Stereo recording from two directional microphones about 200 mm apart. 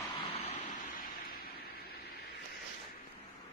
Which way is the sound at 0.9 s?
45° left (ahead or behind).